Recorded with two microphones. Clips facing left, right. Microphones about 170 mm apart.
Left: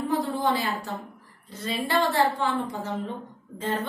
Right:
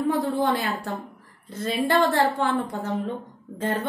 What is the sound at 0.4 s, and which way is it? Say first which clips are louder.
A woman's voice: right 2 dB; 55° right (ahead or behind).